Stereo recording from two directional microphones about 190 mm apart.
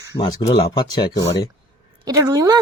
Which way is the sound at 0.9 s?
20° left (ahead or behind).